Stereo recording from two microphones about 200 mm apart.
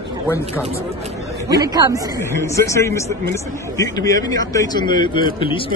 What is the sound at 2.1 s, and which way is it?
A man's voice, 15° left (ahead or behind).